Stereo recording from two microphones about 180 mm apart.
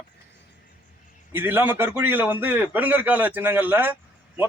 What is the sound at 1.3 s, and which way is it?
Speech, 10° right (ahead or behind).